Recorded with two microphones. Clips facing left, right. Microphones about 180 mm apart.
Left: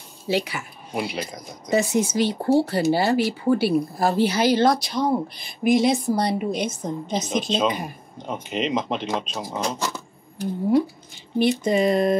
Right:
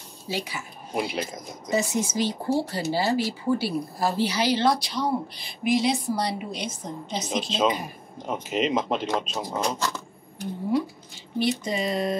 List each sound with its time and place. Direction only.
0.3 s speech: 65° left (ahead or behind)
0.9 s speech: centre (ahead or behind)
1.7 s speech: 60° left (ahead or behind)
7.4 s speech: centre (ahead or behind)
11.3 s speech: 55° left (ahead or behind)